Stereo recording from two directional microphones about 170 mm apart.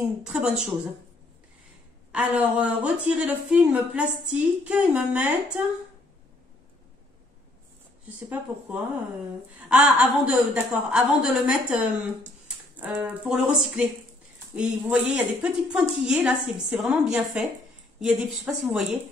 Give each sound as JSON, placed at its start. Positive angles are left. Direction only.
{"t": 0.2, "sound": "a woman's voice", "side_deg": -5}
{"t": 2.1, "sound": "a woman's voice", "side_deg": -5}
{"t": 8.3, "sound": "a woman's voice", "side_deg": -10}